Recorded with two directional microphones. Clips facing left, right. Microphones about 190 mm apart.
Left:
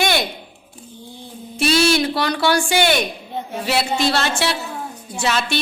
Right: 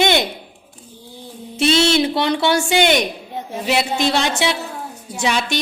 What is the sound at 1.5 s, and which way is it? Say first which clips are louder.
A woman's voice: right 1 dB; 25° right (ahead or behind).